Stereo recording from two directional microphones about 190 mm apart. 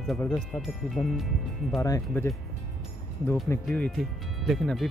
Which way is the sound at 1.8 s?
15° left (ahead or behind).